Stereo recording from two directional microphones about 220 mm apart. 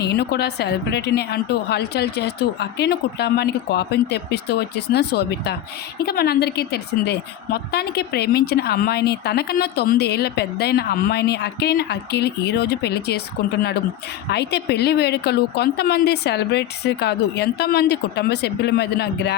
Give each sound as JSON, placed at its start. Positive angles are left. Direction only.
{"t": 0.0, "sound": "a woman's voice", "side_deg": 45}